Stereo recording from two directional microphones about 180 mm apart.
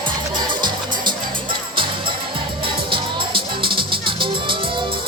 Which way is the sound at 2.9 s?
30° right (ahead or behind).